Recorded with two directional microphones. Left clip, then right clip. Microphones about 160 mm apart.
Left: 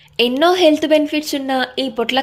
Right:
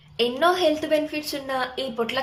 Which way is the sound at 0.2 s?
60° left (ahead or behind).